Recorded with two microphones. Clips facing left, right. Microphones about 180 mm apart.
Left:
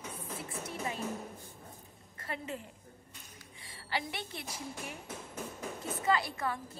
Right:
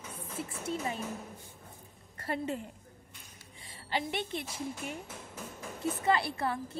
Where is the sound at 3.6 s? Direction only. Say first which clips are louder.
Right 3 dB; 25° right (ahead or behind).